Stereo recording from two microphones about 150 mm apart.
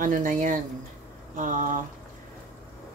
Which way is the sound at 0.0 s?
60° right (ahead or behind).